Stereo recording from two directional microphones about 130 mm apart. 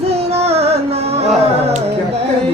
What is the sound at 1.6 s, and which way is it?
Carnatic music, 55° right (ahead or behind).